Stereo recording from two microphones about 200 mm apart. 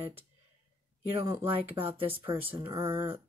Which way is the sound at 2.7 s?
10° right (ahead or behind).